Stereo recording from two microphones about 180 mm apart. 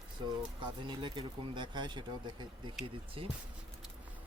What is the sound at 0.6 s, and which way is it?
Speech, 25° right (ahead or behind).